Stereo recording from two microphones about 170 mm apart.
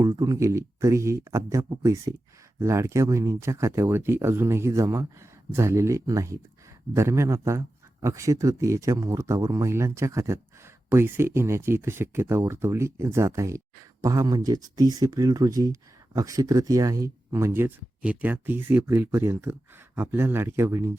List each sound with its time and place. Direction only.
0.0 s speech: 20° right (ahead or behind)